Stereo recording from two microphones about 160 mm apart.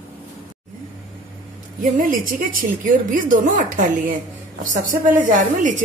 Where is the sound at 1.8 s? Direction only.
60° right (ahead or behind).